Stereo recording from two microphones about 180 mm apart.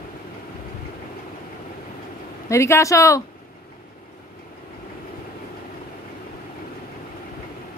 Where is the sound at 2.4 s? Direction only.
15° left (ahead or behind).